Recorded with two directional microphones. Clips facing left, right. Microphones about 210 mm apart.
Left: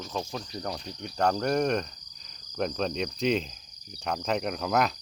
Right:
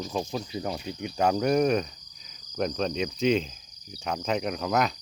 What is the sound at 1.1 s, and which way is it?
Insect, 5° right (ahead or behind).